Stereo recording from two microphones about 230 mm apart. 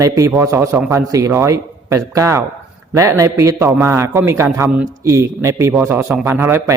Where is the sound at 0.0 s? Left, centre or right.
Centre.